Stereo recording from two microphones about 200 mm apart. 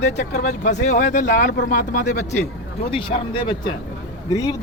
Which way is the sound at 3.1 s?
25° left (ahead or behind).